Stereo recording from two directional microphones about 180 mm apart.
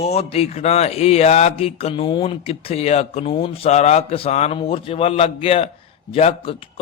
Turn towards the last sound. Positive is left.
turn(degrees=35)  # may be behind; listen again after turning